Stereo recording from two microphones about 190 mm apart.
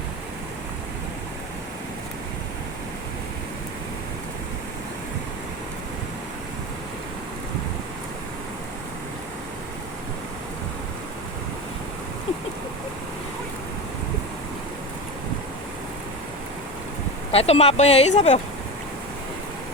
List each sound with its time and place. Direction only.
17.3 s speech: 35° left (ahead or behind)